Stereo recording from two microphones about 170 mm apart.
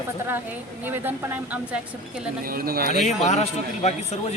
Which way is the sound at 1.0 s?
10° right (ahead or behind).